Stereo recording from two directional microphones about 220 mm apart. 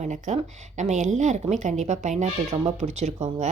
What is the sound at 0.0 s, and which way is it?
Speech, 30° right (ahead or behind).